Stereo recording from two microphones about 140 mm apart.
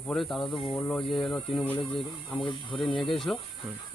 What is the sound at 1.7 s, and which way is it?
Speech, 40° left (ahead or behind).